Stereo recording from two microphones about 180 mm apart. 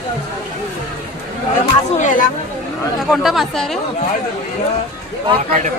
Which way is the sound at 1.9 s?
45° left (ahead or behind).